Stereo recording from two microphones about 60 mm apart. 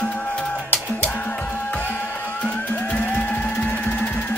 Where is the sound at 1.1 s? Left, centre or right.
Left.